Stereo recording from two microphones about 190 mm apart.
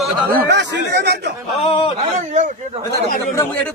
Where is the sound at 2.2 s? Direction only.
35° right (ahead or behind).